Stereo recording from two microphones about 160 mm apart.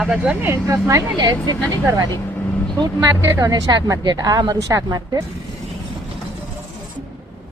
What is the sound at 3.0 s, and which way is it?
A woman's voice, 20° right (ahead or behind).